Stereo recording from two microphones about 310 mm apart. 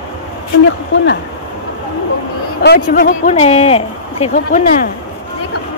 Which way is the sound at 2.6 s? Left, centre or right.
Left.